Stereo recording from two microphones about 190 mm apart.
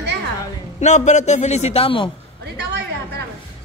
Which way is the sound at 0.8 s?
40° left (ahead or behind).